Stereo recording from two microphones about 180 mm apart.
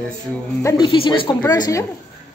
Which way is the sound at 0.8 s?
30° left (ahead or behind).